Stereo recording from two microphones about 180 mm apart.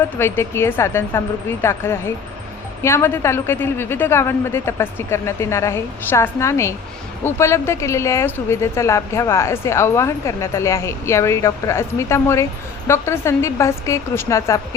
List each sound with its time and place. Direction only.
0.2 s a woman's voice: 15° left (ahead or behind)